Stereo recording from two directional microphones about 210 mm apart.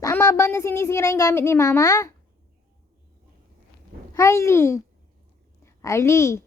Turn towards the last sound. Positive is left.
turn(degrees=15)  # may be behind; listen again after turning